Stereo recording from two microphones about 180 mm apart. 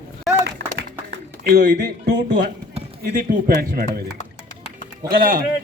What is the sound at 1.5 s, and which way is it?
Speech, 65° right (ahead or behind).